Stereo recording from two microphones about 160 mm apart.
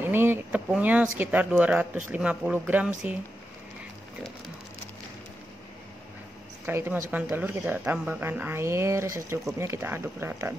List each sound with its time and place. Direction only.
0.0 s a sound: 15° right (ahead or behind)
0.7 s speech: 10° right (ahead or behind)
6.6 s speech: 15° right (ahead or behind)